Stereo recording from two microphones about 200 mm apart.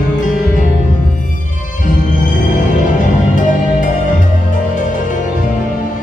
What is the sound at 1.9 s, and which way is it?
Music, 40° left (ahead or behind).